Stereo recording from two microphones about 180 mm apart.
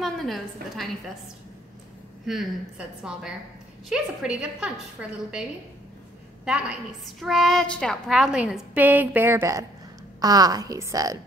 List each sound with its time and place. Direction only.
0.0 s a woman's voice: centre (ahead or behind)
2.2 s a woman's voice: centre (ahead or behind)
6.4 s a woman's voice: 5° right (ahead or behind)